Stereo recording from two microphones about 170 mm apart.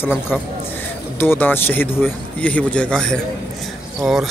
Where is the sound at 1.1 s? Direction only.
10° left (ahead or behind).